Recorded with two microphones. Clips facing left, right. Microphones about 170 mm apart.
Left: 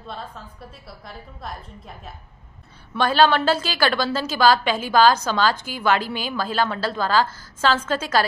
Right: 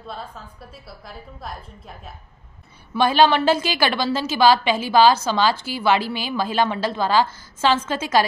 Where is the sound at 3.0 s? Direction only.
10° right (ahead or behind).